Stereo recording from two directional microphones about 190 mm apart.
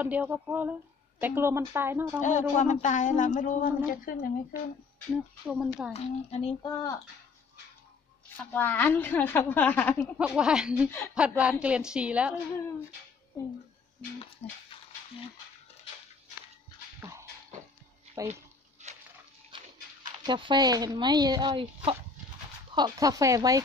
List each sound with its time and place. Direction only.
0.0 s a woman's voice: 10° right (ahead or behind)
2.2 s speech: 40° left (ahead or behind)
5.1 s speech: centre (ahead or behind)
5.9 s speech: 35° left (ahead or behind)
6.6 s speech: 20° left (ahead or behind)
8.5 s a woman's voice: 10° left (ahead or behind)
10.1 s speech: 5° right (ahead or behind)
17.0 s a sound: 15° right (ahead or behind)
18.3 s a sound: 35° right (ahead or behind)
19.5 s a sound: 25° right (ahead or behind)
20.2 s speech: 25° right (ahead or behind)